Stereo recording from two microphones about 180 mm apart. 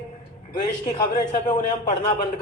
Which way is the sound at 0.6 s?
40° left (ahead or behind).